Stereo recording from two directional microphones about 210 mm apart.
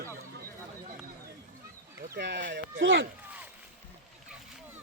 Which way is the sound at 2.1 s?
55° right (ahead or behind).